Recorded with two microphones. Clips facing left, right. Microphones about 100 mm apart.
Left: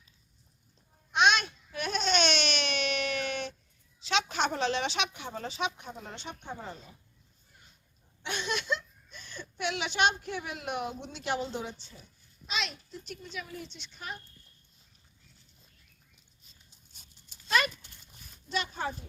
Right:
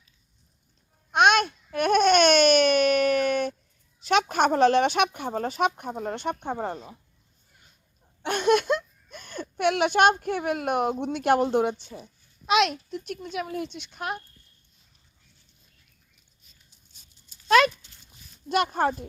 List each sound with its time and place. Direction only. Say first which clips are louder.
1.1 s a sound: right 6 dB; 50° right (ahead or behind)
4.0 s speech: right 8 dB; 50° right (ahead or behind)
8.2 s a child's voice: right 13 dB; 50° right (ahead or behind)
18.4 s a child's voice: right 10 dB; 55° right (ahead or behind)